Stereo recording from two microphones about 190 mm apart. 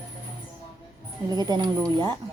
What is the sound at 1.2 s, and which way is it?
Speech, 20° right (ahead or behind).